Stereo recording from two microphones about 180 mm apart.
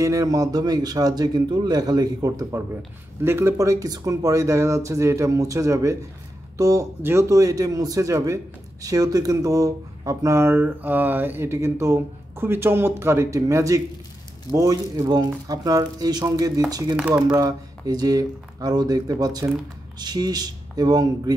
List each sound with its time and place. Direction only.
0.0 s a man's voice: 15° right (ahead or behind)
16.9 s speech: 5° right (ahead or behind)
17.3 s a man's voice: 20° right (ahead or behind)